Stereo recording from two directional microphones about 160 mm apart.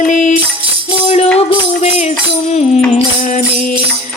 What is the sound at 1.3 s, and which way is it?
Music, 40° left (ahead or behind).